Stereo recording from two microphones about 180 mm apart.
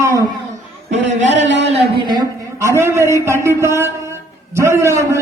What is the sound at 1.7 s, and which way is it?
A man's voice, 25° right (ahead or behind).